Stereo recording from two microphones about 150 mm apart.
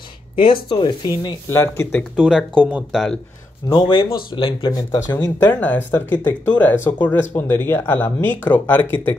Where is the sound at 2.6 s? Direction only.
10° right (ahead or behind).